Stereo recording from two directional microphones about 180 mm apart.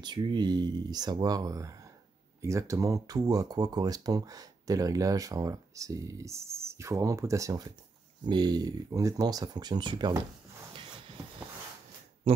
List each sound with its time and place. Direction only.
0.0 s speech: 25° right (ahead or behind)
12.2 s speech: 35° right (ahead or behind)